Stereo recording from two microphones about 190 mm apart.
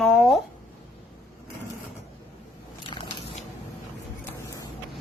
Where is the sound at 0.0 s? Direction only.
Centre (ahead or behind).